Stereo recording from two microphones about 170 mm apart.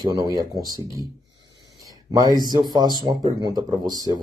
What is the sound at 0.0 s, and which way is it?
Speech, 20° right (ahead or behind).